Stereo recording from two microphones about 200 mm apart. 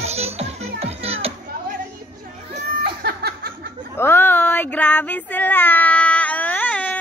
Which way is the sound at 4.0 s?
10° left (ahead or behind).